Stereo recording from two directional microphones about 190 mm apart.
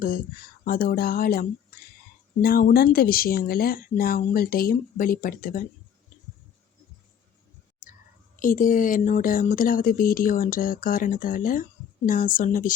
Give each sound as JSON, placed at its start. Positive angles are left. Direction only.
{"t": 0.6, "sound": "speech", "side_deg": 50}
{"t": 8.4, "sound": "speech", "side_deg": 45}